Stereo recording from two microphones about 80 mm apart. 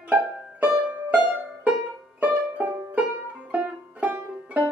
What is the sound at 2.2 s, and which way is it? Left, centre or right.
Music, centre.